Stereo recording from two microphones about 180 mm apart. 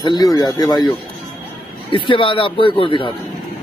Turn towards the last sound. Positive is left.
turn(degrees=30)  # may be behind; listen again after turning